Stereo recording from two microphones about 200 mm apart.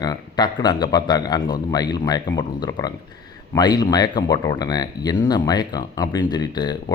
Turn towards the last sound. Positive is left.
turn(degrees=20)  # may be behind; listen again after turning